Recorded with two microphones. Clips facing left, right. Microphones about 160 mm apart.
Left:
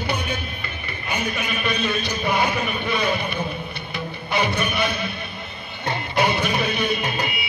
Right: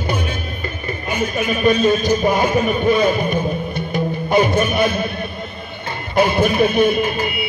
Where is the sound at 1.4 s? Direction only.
45° right (ahead or behind).